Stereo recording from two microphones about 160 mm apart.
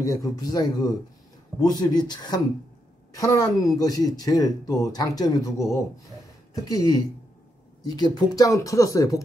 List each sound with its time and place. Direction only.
0.0 s speech: 20° left (ahead or behind)